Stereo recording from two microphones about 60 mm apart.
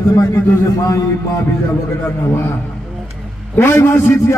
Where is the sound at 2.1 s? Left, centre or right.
Left.